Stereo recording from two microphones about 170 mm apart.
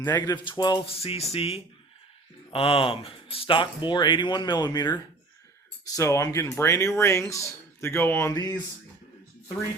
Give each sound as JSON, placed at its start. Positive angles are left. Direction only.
{"t": 0.1, "sound": "speech", "side_deg": 25}
{"t": 6.0, "sound": "speech", "side_deg": 20}